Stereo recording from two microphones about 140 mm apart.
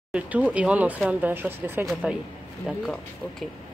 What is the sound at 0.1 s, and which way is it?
Speech, 10° right (ahead or behind).